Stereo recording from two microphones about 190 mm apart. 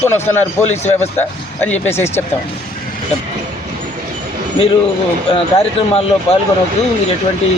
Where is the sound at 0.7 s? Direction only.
35° left (ahead or behind).